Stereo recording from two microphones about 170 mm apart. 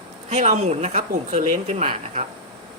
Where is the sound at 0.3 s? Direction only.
40° right (ahead or behind).